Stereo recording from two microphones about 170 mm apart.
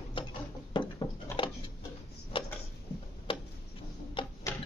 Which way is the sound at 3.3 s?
30° left (ahead or behind).